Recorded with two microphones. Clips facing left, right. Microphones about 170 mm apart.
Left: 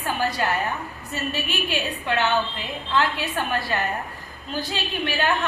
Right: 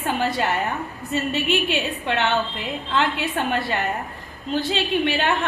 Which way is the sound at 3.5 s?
25° right (ahead or behind).